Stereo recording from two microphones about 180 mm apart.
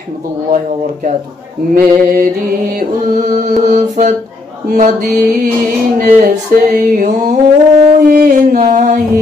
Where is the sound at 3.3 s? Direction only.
45° right (ahead or behind).